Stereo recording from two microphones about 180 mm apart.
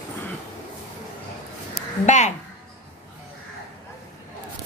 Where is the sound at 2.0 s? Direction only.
40° left (ahead or behind).